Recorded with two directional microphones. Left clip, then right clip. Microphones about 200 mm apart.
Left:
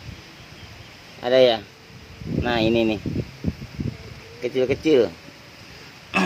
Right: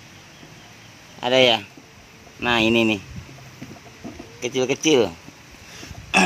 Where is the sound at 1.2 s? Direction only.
40° right (ahead or behind).